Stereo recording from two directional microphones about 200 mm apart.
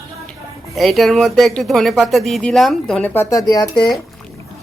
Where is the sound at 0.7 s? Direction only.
Centre (ahead or behind).